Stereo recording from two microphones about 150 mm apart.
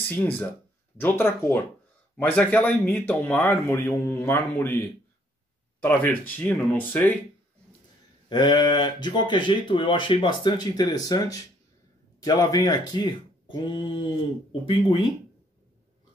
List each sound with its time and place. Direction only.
0.1 s speech: 10° left (ahead or behind)
5.8 s speech: 10° left (ahead or behind)
8.3 s speech: 30° left (ahead or behind)